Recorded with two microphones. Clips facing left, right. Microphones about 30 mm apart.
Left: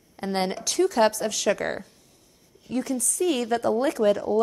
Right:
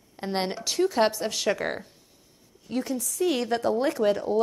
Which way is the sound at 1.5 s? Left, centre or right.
Centre.